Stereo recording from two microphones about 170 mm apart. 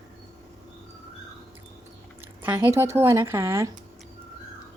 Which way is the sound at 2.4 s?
10° right (ahead or behind).